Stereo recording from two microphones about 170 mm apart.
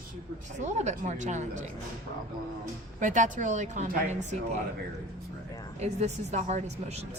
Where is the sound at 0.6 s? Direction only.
45° right (ahead or behind).